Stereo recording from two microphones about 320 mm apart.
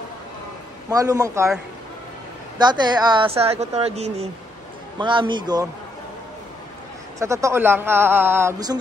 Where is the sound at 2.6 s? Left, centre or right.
Centre.